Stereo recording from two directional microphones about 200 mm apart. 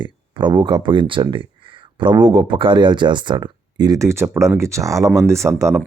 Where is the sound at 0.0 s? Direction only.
25° right (ahead or behind).